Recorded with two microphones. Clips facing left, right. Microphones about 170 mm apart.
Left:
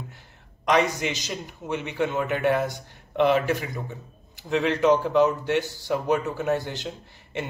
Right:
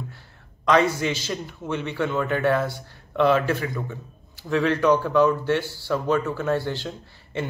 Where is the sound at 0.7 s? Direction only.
15° left (ahead or behind).